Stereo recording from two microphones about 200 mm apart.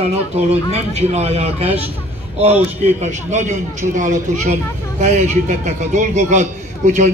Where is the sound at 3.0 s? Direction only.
35° right (ahead or behind).